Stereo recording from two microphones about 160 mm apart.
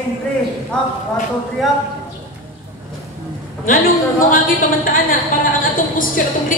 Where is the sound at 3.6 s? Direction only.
60° left (ahead or behind).